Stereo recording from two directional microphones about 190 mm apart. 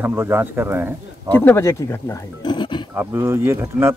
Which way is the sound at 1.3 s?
10° left (ahead or behind).